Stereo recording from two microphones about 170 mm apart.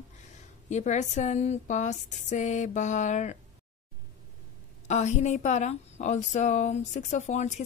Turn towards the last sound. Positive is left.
turn(degrees=40)  # may be behind; listen again after turning